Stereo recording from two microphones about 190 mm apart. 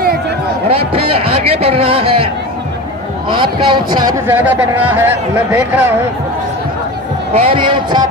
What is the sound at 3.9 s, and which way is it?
A man's voice, 15° right (ahead or behind).